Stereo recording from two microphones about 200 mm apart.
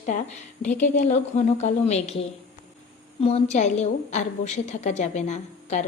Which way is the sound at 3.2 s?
35° left (ahead or behind).